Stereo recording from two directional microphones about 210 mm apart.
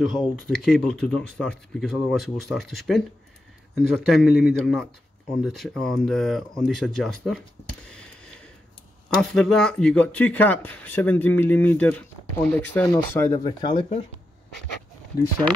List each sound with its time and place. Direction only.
0.0 s speech: centre (ahead or behind)
9.1 s speech: centre (ahead or behind); by 14.0 s 25° left (ahead or behind)